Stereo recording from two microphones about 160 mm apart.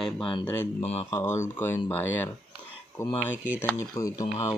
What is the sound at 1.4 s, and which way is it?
Speech, 15° left (ahead or behind).